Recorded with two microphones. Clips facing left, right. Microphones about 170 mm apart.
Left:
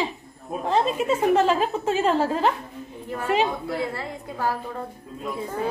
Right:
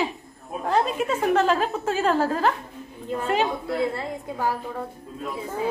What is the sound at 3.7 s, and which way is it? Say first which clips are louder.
Speech: right 3 dB; 20° right (ahead or behind).